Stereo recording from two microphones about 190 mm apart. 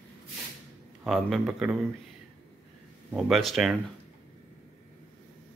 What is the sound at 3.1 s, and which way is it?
Speech, centre (ahead or behind).